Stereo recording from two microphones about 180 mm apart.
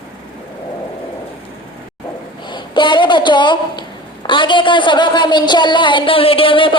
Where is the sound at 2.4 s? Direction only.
25° left (ahead or behind).